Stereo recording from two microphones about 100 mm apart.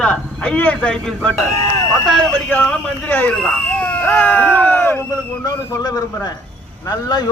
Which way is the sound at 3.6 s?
15° left (ahead or behind).